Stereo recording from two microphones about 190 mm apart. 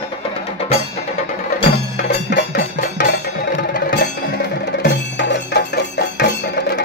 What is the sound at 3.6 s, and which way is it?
Music, 45° left (ahead or behind).